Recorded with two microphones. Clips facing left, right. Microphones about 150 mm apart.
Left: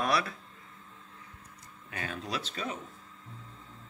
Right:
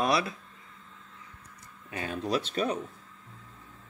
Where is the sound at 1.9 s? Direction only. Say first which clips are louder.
Right 6 dB; 25° right (ahead or behind).